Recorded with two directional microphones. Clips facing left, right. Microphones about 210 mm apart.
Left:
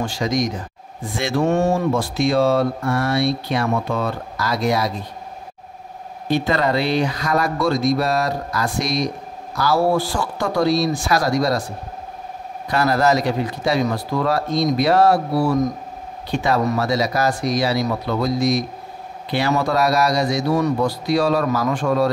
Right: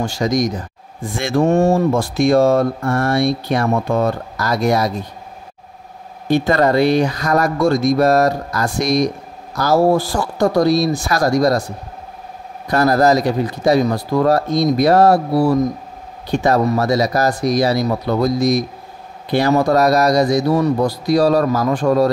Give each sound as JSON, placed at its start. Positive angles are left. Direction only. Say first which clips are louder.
{"t": 0.0, "sound": "speech", "louder": "right 3 dB", "side_deg": -40}
{"t": 6.3, "sound": "speech", "louder": "right 5 dB", "side_deg": -45}
{"t": 12.6, "sound": "speech", "louder": "right 4 dB", "side_deg": -40}